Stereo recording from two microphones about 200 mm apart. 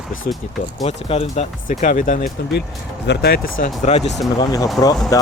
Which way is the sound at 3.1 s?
50° left (ahead or behind).